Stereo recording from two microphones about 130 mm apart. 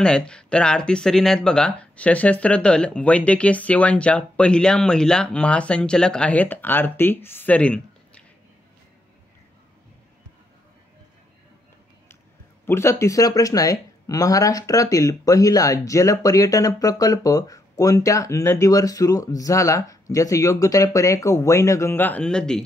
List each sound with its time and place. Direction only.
0.0 s speech: 5° left (ahead or behind)
12.6 s speech: 20° left (ahead or behind); by 22.6 s 5° left (ahead or behind)